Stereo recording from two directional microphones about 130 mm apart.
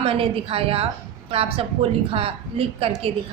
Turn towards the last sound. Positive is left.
turn(degrees=-50)  # may be behind; listen again after turning